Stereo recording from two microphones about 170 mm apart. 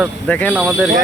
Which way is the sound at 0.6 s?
5° right (ahead or behind).